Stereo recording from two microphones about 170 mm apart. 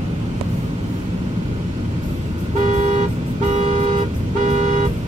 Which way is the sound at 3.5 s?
35° right (ahead or behind).